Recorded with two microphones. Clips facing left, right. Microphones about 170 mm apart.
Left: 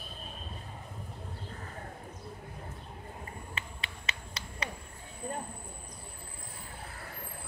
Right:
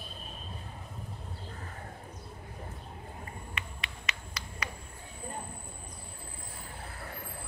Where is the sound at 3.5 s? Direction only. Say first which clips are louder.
Even; 30° left (ahead or behind).